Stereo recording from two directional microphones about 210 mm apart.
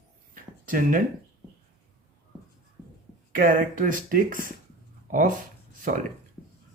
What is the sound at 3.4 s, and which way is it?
Speech, 40° right (ahead or behind).